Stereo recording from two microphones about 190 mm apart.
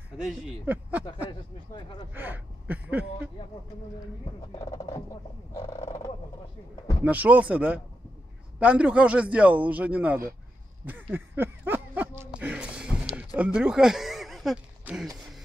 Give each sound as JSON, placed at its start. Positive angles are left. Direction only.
{"t": 0.2, "sound": "speech", "side_deg": 0}
{"t": 2.1, "sound": "a sound", "side_deg": -10}
{"t": 4.6, "sound": "speech", "side_deg": 20}
{"t": 5.6, "sound": "frog", "side_deg": 25}
{"t": 7.1, "sound": "speech", "side_deg": -10}
{"t": 10.9, "sound": "a sound", "side_deg": -10}
{"t": 13.4, "sound": "speech", "side_deg": -5}